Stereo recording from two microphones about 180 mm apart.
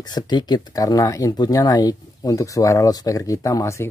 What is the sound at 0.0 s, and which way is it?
Speech, 25° left (ahead or behind).